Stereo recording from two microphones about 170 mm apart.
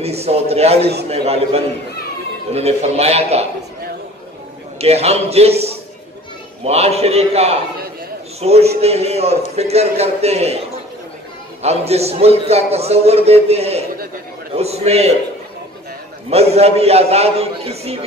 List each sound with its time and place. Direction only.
0.0 s a man's voice: 40° right (ahead or behind)
4.7 s a man's voice: 40° right (ahead or behind)
11.6 s a man's voice: 40° right (ahead or behind)
16.3 s a man's voice: 35° right (ahead or behind)